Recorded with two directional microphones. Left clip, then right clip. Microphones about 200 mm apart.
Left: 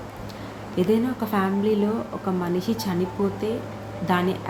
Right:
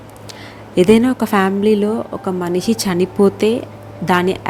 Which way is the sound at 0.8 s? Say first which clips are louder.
Right 11 dB; 45° right (ahead or behind).